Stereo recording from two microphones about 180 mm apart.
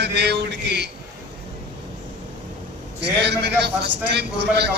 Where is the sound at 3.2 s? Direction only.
70° right (ahead or behind).